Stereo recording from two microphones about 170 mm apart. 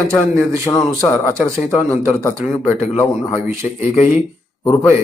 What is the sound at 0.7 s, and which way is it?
Speech, 20° left (ahead or behind).